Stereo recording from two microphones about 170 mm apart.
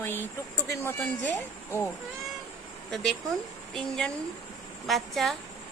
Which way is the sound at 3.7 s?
5° left (ahead or behind).